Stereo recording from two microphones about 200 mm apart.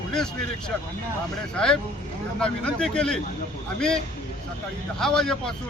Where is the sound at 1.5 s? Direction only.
5° left (ahead or behind).